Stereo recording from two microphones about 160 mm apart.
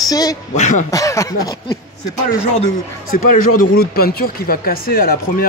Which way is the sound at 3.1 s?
65° left (ahead or behind).